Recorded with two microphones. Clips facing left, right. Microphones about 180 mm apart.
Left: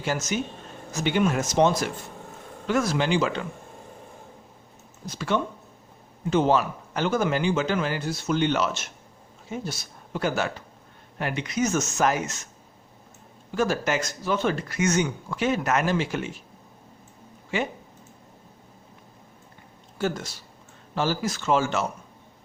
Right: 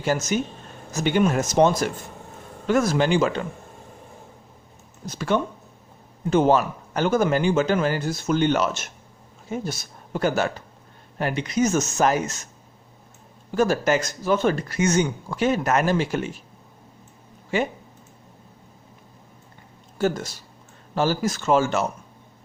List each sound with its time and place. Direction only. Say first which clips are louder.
0.0 s speech: right 4 dB; 40° right (ahead or behind)
5.1 s speech: right 3 dB; 45° right (ahead or behind)
13.6 s speech: right 4 dB; 40° right (ahead or behind)
20.0 s speech: right 4 dB; 40° right (ahead or behind)